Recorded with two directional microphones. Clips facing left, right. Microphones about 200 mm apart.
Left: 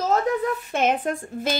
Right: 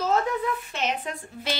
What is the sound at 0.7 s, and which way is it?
Speech, 50° left (ahead or behind).